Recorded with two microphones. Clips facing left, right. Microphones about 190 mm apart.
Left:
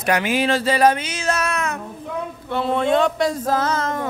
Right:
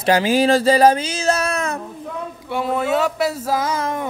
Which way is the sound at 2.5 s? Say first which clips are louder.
Left 1 dB; 10° right (ahead or behind).